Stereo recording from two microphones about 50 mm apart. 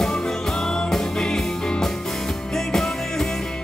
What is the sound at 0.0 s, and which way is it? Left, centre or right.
Music, centre.